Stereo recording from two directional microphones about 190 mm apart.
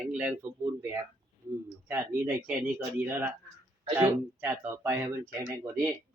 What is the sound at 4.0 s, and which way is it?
Speech, 15° right (ahead or behind).